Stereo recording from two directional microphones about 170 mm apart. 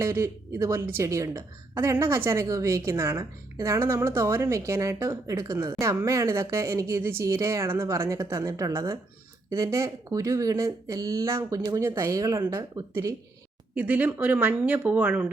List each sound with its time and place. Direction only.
0.0 s a woman's voice: 15° right (ahead or behind)